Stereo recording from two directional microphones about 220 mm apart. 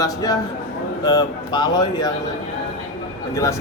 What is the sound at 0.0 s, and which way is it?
Speech, 15° left (ahead or behind).